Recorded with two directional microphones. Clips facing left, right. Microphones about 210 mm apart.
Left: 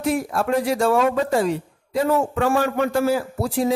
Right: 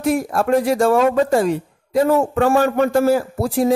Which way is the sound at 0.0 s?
45° right (ahead or behind).